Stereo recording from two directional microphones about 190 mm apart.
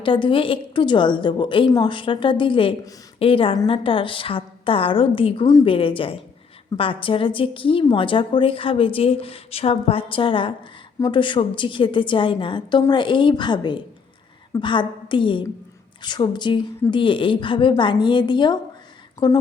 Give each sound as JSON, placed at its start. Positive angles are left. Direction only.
{"t": 0.0, "sound": "a woman's voice", "side_deg": 25}